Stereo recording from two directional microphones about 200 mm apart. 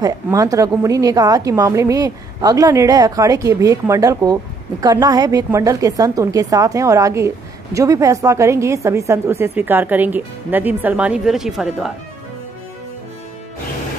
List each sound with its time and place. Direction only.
0.0 s a woman's voice: 15° right (ahead or behind)